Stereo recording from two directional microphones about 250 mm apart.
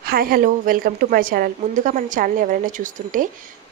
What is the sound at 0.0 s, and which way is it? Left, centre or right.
A woman's voice, right.